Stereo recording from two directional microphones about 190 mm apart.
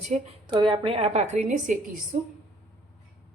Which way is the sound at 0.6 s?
25° right (ahead or behind).